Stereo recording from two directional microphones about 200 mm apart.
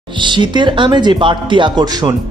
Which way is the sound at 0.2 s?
25° right (ahead or behind).